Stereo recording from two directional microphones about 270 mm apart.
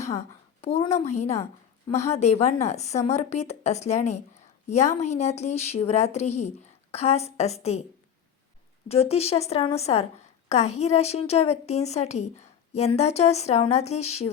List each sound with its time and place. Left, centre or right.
0.0 s a woman's voice: left
8.9 s speech: left